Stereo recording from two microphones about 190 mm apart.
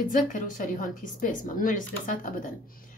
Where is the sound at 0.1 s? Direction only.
45° left (ahead or behind).